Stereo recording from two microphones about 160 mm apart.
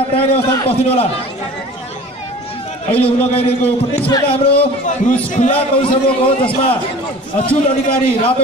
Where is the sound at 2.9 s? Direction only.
35° left (ahead or behind).